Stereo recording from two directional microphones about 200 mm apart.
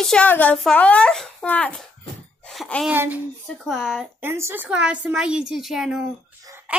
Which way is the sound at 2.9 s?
10° right (ahead or behind).